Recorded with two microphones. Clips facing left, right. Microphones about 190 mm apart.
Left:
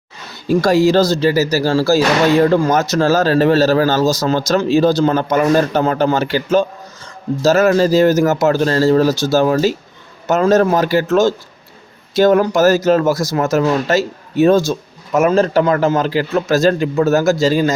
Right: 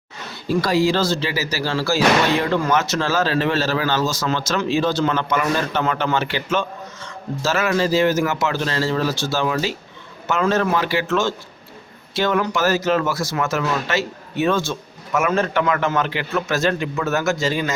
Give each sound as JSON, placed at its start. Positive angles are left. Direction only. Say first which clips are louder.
{"t": 0.6, "sound": "speech", "louder": "left 7 dB", "side_deg": 45}